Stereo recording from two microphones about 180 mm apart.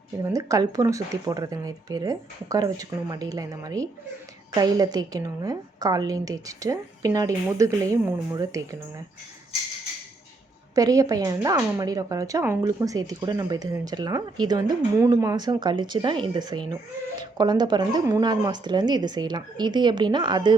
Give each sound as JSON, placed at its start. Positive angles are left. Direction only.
{"t": 0.2, "sound": "speech", "side_deg": -20}
{"t": 10.8, "sound": "speech", "side_deg": -20}